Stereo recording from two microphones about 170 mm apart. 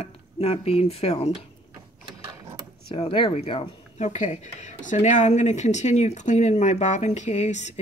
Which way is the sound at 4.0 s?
45° left (ahead or behind).